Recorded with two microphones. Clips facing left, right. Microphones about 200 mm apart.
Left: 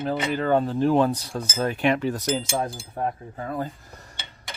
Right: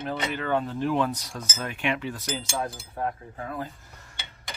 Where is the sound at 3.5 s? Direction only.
40° left (ahead or behind).